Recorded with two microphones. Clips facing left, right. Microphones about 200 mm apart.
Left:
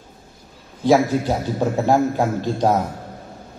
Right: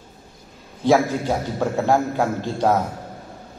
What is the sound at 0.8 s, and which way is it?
A man's voice, 15° left (ahead or behind).